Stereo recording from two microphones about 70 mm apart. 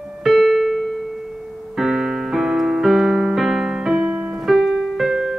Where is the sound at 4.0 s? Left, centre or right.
Centre.